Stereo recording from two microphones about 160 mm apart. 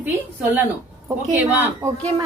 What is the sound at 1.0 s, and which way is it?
Speech, 10° right (ahead or behind).